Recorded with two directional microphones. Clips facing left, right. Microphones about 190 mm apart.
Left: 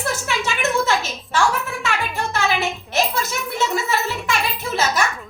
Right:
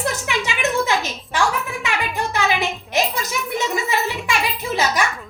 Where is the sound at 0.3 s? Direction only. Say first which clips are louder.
Even; 15° right (ahead or behind).